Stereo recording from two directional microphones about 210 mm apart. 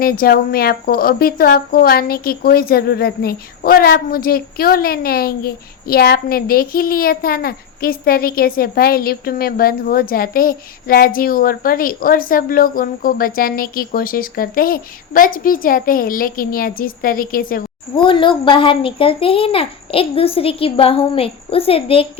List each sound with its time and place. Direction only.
0.0 s a woman's voice: 45° left (ahead or behind)
17.9 s a child's voice: 25° left (ahead or behind)